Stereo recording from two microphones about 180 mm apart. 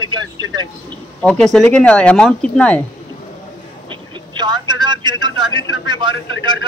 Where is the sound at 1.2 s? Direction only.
5° left (ahead or behind).